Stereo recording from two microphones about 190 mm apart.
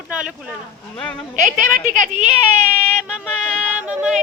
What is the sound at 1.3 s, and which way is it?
Speech, 45° right (ahead or behind).